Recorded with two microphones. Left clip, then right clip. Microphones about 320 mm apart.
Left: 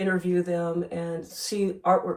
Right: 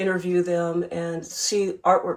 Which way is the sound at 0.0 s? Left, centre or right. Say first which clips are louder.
Right 3 dB; right.